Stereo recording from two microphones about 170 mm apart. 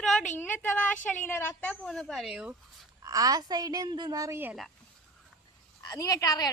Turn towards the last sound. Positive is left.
turn(degrees=20)  # may be behind; listen again after turning